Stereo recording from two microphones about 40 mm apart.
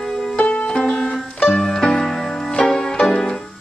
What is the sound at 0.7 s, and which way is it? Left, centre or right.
Music, left.